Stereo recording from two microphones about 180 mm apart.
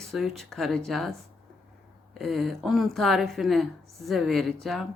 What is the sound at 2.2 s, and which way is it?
Speech, centre (ahead or behind).